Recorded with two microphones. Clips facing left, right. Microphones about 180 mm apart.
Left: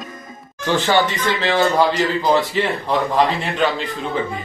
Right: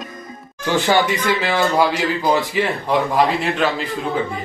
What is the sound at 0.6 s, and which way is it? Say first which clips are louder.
Speech: even; 10° right (ahead or behind).